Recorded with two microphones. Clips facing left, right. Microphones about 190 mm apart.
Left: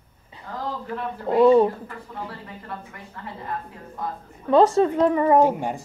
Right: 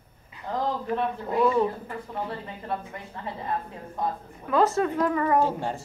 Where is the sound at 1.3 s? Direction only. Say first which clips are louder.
Left 8 dB; 30° left (ahead or behind).